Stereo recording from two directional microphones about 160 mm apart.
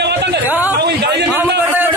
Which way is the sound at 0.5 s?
10° right (ahead or behind).